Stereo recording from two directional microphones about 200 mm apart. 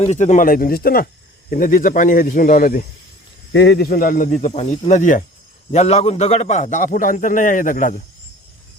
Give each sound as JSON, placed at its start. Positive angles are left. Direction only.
{"t": 0.0, "sound": "speech", "side_deg": 35}
{"t": 3.5, "sound": "a man's voice", "side_deg": 60}